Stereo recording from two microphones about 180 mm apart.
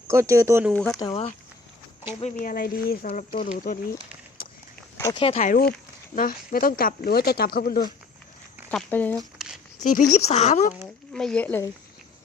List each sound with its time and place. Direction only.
0.1 s speech: 15° right (ahead or behind)
0.7 s speech: 10° left (ahead or behind)
2.2 s speech: 50° left (ahead or behind)
4.9 s speech: 15° left (ahead or behind)
5.4 s speech: 50° left (ahead or behind)
8.7 s speech: 10° left (ahead or behind)
9.8 s speech: 45° left (ahead or behind)
11.1 s speech: 5° left (ahead or behind)